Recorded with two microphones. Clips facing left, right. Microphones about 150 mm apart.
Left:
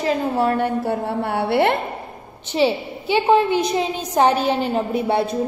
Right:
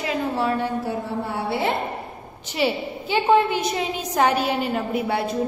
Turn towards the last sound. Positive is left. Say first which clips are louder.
# left 4 dB
turn(degrees=25)  # may be behind; listen again after turning